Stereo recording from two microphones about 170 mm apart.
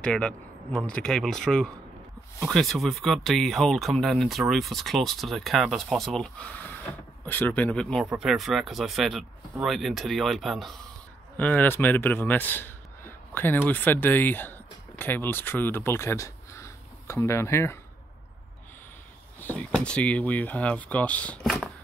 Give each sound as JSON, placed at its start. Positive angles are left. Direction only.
{"t": 0.0, "sound": "speech", "side_deg": 5}
{"t": 19.4, "sound": "speech", "side_deg": 10}